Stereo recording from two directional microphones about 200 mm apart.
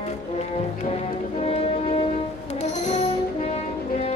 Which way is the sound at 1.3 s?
30° left (ahead or behind).